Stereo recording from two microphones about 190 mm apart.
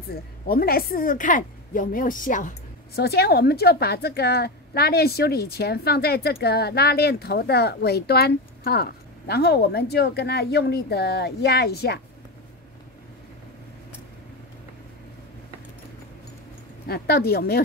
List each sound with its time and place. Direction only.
0.1 s a woman's voice: 55° left (ahead or behind)
3.0 s a woman's voice: 55° left (ahead or behind)
16.8 s a woman's voice: 55° left (ahead or behind)